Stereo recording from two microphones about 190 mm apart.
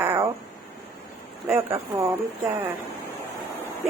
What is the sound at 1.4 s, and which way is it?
Speech, 10° right (ahead or behind).